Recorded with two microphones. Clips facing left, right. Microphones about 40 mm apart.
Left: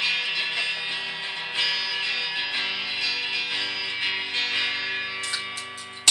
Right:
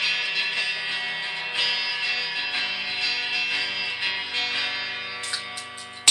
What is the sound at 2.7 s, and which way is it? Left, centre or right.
Music, centre.